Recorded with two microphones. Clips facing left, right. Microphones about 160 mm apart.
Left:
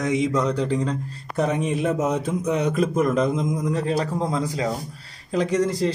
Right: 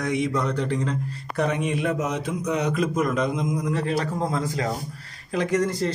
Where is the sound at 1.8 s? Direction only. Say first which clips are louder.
Left 3 dB; 25° left (ahead or behind).